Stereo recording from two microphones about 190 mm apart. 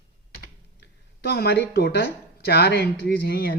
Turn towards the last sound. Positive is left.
turn(degrees=55)  # may be behind; listen again after turning